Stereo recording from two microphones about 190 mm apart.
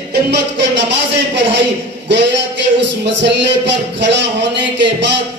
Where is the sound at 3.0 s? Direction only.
65° right (ahead or behind).